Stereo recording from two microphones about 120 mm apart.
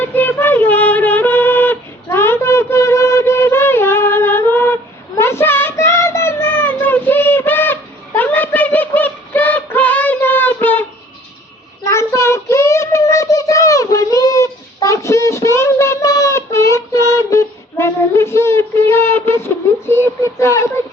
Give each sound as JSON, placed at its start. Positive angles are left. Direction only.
{"t": 0.0, "sound": "female singing", "side_deg": 15}
{"t": 11.8, "sound": "child singing", "side_deg": 25}